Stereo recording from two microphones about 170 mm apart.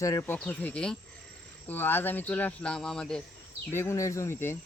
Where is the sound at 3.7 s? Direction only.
15° left (ahead or behind).